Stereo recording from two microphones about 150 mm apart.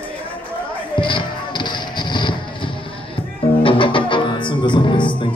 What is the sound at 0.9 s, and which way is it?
Music, 35° left (ahead or behind).